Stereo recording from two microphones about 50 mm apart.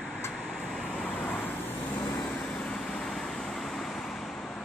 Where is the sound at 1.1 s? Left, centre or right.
Left; by 4.3 s centre.